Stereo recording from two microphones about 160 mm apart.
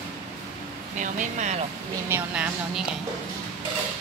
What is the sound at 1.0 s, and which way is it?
Speech, 50° right (ahead or behind).